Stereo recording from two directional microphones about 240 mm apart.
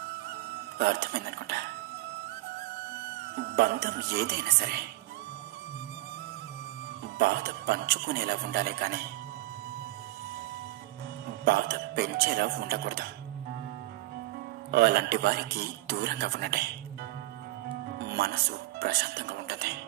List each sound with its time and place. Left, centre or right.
0.7 s a man's voice: right
3.3 s a man's voice: right
7.2 s a man's voice: right
11.4 s a man's voice: right
14.7 s a man's voice: right
17.9 s speech: right